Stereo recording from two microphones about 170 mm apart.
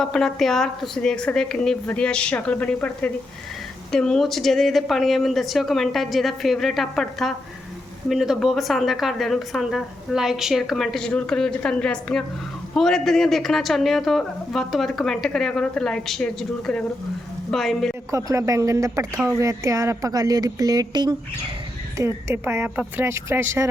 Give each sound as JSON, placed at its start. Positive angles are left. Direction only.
{"t": 0.0, "sound": "a woman's voice", "side_deg": 5}
{"t": 18.1, "sound": "a woman's voice", "side_deg": -20}